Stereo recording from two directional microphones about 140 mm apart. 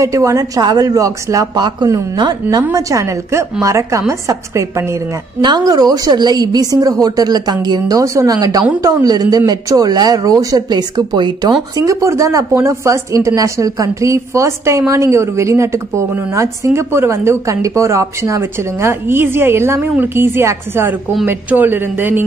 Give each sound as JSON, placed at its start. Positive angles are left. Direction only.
{"t": 0.0, "sound": "speech", "side_deg": -20}